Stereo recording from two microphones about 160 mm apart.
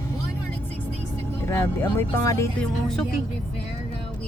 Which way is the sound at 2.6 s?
5° left (ahead or behind).